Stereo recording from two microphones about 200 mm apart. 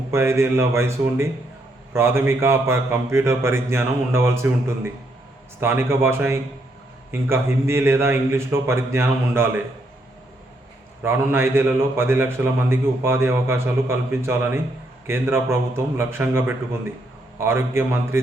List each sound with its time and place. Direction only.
0.1 s a man's voice: 15° right (ahead or behind)
11.0 s a man's voice: 10° right (ahead or behind)